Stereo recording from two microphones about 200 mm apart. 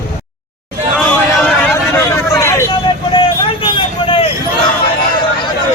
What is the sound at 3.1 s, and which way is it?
Vehicle, 25° left (ahead or behind).